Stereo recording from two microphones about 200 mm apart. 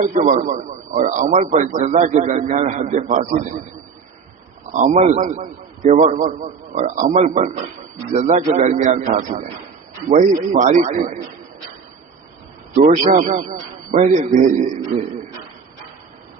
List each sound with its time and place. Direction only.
0.0 s a man's voice: 35° right (ahead or behind)
4.7 s a man's voice: 40° right (ahead or behind)
13.1 s a man's voice: 40° right (ahead or behind)